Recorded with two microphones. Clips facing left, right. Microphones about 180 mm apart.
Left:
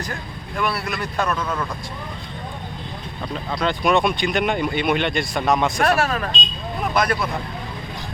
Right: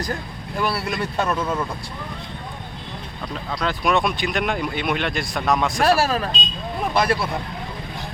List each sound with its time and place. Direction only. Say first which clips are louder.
0.5 s speech: right 1 dB; 35° right (ahead or behind)
3.5 s speech: left 2 dB; centre (ahead or behind)
5.9 s speech: right 1 dB; 30° right (ahead or behind)